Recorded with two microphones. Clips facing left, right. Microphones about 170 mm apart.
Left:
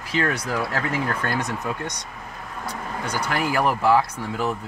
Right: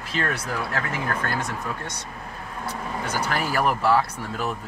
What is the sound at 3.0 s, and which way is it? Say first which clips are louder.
Speech: even; 10° right (ahead or behind).